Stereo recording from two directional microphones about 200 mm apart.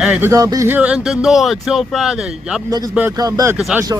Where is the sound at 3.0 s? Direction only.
15° right (ahead or behind).